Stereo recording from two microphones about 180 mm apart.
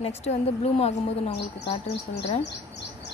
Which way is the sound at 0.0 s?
35° left (ahead or behind).